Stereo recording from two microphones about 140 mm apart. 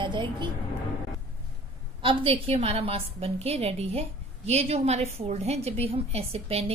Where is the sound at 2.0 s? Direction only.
40° right (ahead or behind).